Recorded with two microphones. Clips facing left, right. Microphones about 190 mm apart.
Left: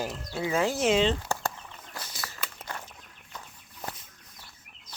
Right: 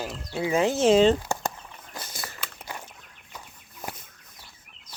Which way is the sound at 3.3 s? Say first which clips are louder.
Right 1 dB; 10° right (ahead or behind).